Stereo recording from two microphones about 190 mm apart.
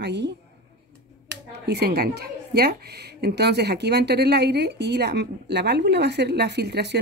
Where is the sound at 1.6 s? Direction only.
55° right (ahead or behind).